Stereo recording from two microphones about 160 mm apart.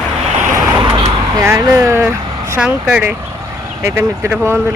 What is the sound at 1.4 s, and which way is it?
Speech, 20° right (ahead or behind).